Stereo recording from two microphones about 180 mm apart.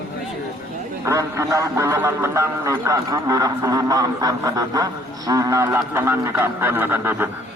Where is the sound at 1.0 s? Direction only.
15° right (ahead or behind).